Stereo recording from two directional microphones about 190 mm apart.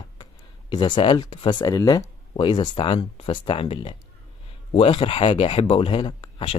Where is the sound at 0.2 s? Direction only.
25° left (ahead or behind).